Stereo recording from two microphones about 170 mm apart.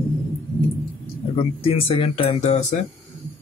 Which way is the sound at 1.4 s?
35° left (ahead or behind).